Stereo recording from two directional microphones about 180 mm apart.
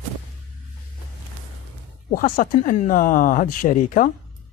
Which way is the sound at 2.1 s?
50° left (ahead or behind).